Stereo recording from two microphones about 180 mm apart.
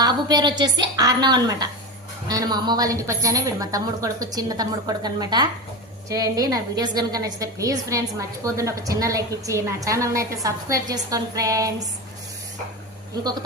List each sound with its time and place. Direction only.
0.0 s a woman's voice: 20° right (ahead or behind)